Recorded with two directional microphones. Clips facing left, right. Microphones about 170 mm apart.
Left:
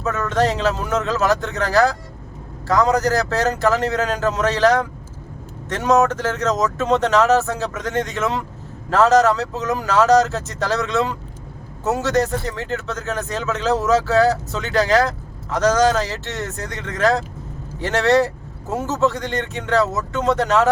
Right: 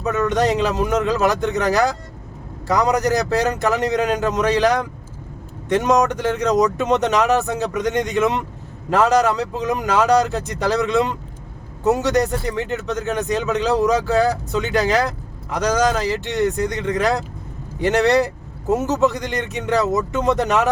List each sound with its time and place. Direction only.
0.0 s speech: 15° right (ahead or behind)